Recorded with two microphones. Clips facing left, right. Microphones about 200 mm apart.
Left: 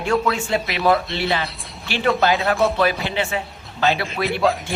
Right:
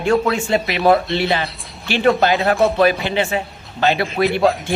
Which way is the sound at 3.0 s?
60° right (ahead or behind).